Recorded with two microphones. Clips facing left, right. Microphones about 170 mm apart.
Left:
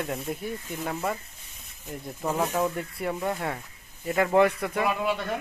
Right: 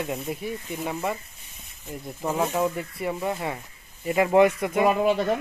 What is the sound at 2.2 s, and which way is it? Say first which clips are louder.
Speech: right 2 dB; 5° right (ahead or behind).